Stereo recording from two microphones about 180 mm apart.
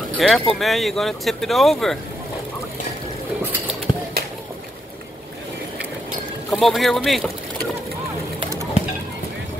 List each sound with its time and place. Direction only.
0.2 s speech: centre (ahead or behind)
3.9 s a sound: 25° left (ahead or behind)
6.5 s speech: centre (ahead or behind)